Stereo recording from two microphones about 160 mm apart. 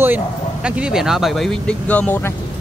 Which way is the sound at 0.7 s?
5° right (ahead or behind).